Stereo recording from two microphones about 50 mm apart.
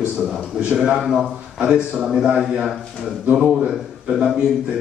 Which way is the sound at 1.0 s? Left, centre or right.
Centre.